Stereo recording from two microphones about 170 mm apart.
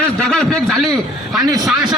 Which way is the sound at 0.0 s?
5° left (ahead or behind).